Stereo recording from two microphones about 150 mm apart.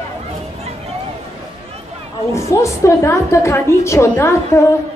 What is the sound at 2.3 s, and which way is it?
A woman's voice, 20° left (ahead or behind).